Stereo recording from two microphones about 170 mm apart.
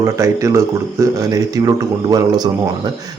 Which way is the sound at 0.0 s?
20° right (ahead or behind).